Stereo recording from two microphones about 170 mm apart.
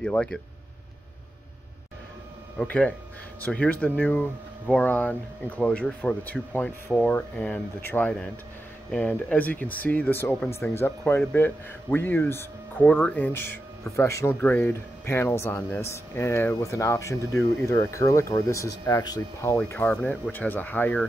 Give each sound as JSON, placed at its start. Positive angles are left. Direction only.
{"t": 0.0, "sound": "speech", "side_deg": 5}
{"t": 2.6, "sound": "speech", "side_deg": 5}